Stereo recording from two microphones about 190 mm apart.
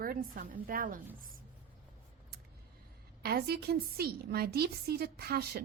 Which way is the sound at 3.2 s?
55° right (ahead or behind).